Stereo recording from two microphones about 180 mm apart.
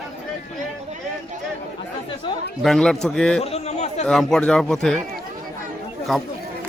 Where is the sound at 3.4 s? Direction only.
35° left (ahead or behind).